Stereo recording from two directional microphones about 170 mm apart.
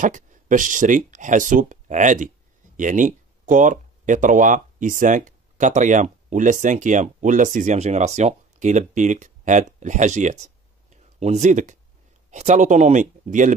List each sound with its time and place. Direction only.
0.0 s speech: 50° right (ahead or behind)